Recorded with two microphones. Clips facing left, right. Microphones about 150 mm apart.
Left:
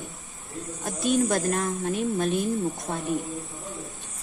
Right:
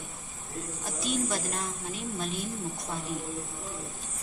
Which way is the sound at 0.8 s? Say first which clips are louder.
Left 8 dB; 55° left (ahead or behind).